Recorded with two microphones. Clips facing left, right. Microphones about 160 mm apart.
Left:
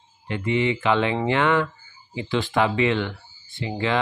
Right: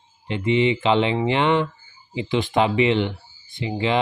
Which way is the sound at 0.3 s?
20° right (ahead or behind).